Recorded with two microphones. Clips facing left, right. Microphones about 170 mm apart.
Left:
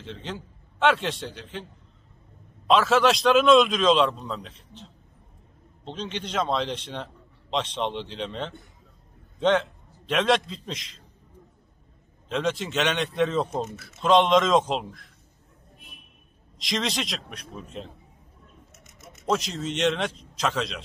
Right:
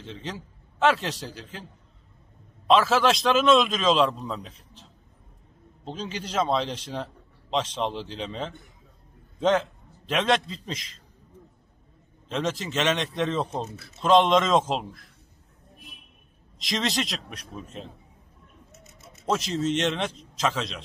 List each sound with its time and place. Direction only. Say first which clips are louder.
0.0 s a man's voice: even; centre (ahead or behind)
5.9 s a man's voice: left 1 dB; 5° right (ahead or behind)
12.3 s a man's voice: left 2 dB; centre (ahead or behind)
16.5 s a man's voice: right 1 dB; centre (ahead or behind)
18.9 s a sound: left 5 dB; 30° right (ahead or behind)
19.2 s a man's voice: right 1 dB; centre (ahead or behind)